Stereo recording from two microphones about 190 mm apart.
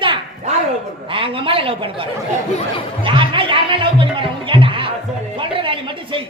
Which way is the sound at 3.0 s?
25° right (ahead or behind).